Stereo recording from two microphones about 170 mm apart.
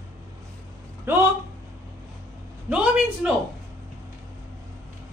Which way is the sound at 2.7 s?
5° right (ahead or behind).